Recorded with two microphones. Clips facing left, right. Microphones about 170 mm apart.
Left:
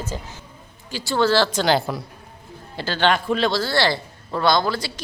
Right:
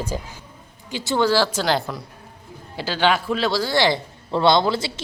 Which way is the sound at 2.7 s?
10° right (ahead or behind).